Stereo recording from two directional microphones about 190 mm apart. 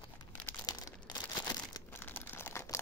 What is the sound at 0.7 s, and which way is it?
Crumpling, 20° left (ahead or behind).